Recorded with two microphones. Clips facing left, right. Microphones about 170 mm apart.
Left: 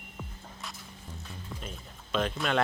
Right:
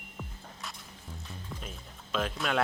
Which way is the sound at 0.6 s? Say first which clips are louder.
Even; centre (ahead or behind).